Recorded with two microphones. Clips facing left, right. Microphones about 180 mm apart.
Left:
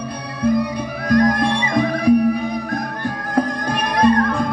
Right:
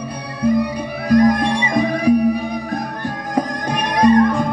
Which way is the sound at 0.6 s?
10° right (ahead or behind).